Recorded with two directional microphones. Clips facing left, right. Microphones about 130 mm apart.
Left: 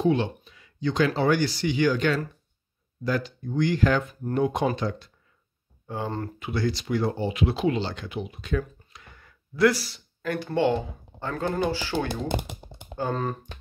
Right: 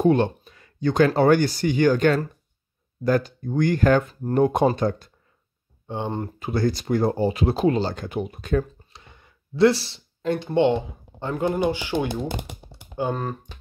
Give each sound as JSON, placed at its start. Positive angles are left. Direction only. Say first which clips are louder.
{"t": 0.0, "sound": "speech", "louder": "right 4 dB", "side_deg": -50}
{"t": 4.1, "sound": "speech", "louder": "right 4 dB", "side_deg": -35}
{"t": 4.4, "sound": "speech", "louder": "right 5 dB", "side_deg": -50}
{"t": 5.9, "sound": "speech", "louder": "right 3 dB", "side_deg": -25}
{"t": 6.4, "sound": "speech", "louder": "right 5 dB", "side_deg": -45}
{"t": 8.9, "sound": "speech", "louder": "right 1 dB", "side_deg": -25}